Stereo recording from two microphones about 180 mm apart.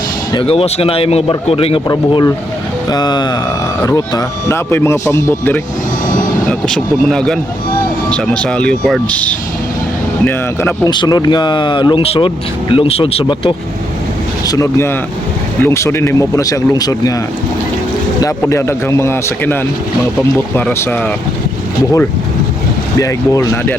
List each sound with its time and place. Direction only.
0.3 s speech: 35° left (ahead or behind)
1.9 s speech: 20° left (ahead or behind)
6.5 s speech: 5° left (ahead or behind)
10.9 s speech: 25° left (ahead or behind)
14.4 s speech: 20° left (ahead or behind)
18.2 s speech: 15° left (ahead or behind)
20.6 s speech: 10° left (ahead or behind)
23.0 s speech: 20° left (ahead or behind)